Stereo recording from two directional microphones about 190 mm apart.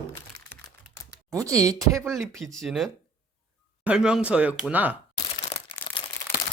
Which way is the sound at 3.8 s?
5° right (ahead or behind).